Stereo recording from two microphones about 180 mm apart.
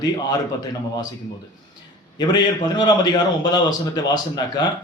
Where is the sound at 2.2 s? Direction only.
25° left (ahead or behind).